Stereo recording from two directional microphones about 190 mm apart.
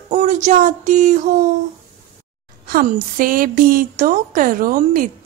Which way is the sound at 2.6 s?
50° right (ahead or behind).